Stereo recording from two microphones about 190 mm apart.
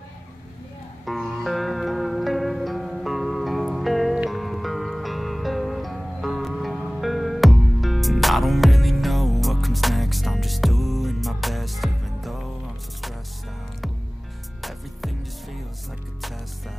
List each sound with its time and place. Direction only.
1.0 s music: centre (ahead or behind)
14.6 s music: centre (ahead or behind)